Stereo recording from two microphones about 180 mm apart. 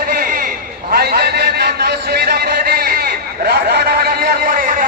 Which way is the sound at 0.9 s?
60° right (ahead or behind).